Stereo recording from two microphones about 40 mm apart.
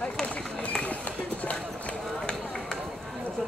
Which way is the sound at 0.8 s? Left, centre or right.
Left.